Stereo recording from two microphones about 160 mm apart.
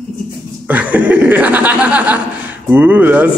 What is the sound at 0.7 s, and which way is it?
Chuckle, 10° right (ahead or behind).